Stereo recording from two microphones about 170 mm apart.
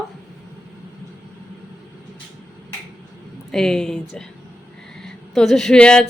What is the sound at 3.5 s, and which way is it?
A woman's voice, 5° left (ahead or behind).